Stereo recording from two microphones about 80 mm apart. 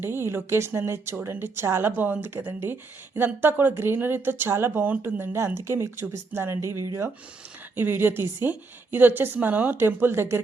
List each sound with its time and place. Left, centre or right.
0.0 s speech: right
7.8 s speech: right